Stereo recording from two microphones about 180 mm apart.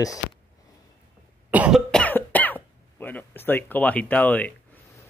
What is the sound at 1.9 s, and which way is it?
Cough, 10° left (ahead or behind).